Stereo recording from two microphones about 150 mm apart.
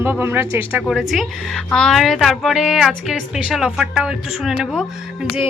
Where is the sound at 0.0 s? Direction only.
15° right (ahead or behind).